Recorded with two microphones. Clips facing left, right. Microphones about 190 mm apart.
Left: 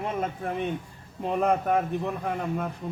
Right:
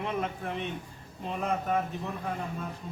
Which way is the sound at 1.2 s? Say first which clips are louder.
Left 7 dB; 60° left (ahead or behind).